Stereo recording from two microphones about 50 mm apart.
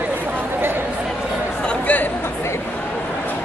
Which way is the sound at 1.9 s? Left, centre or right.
Left.